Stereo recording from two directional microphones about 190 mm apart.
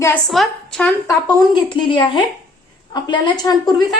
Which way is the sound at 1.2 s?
25° left (ahead or behind).